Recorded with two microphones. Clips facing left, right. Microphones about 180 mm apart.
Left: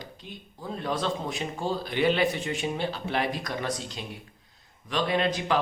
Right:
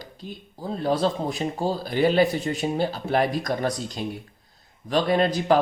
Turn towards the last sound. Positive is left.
turn(degrees=-40)  # may be behind; listen again after turning